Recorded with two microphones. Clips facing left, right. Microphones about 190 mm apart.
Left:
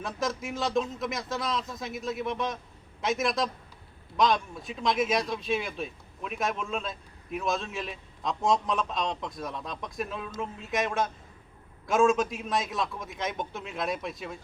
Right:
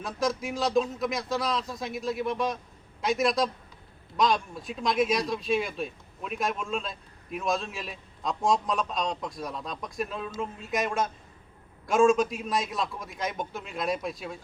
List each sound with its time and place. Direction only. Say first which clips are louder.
0.0 s speech: right 3 dB; centre (ahead or behind)